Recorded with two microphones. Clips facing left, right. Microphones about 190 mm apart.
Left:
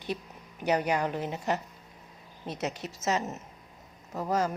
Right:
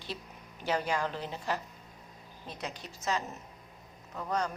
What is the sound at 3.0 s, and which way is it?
A woman's voice, 20° left (ahead or behind).